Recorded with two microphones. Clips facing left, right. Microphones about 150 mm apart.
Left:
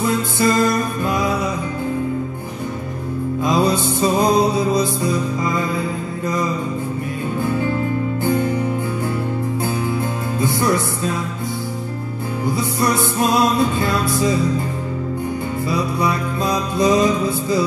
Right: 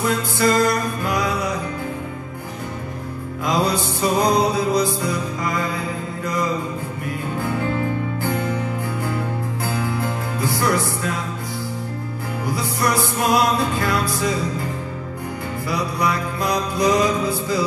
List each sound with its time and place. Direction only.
0.0 s music: 25° left (ahead or behind)
3.4 s music: 25° left (ahead or behind)
9.7 s music: 25° left (ahead or behind)
12.5 s music: 25° left (ahead or behind)
15.7 s music: 25° left (ahead or behind)